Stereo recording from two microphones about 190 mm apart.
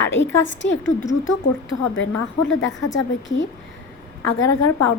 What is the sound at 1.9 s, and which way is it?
A woman's voice, 80° left.